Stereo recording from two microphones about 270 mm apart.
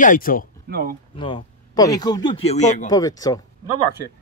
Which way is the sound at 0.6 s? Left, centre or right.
Right.